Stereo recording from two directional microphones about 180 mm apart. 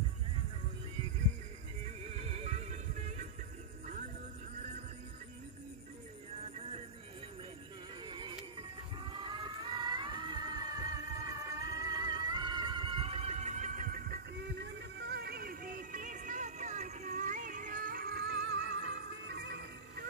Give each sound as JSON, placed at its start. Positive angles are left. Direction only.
{"t": 2.0, "sound": "music", "side_deg": -35}
{"t": 8.0, "sound": "music", "side_deg": -25}
{"t": 14.6, "sound": "music", "side_deg": -75}